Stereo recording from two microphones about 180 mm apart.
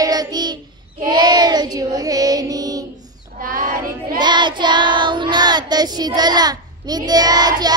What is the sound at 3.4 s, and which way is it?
Child singing, 50° right (ahead or behind).